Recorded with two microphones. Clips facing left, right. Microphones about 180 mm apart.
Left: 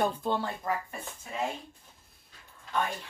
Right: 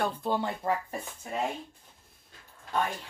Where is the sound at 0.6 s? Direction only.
30° right (ahead or behind).